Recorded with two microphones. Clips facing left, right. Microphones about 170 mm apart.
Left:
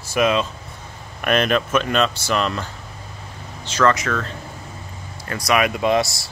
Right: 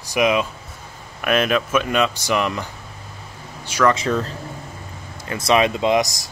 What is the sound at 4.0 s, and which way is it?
Speech, 30° right (ahead or behind).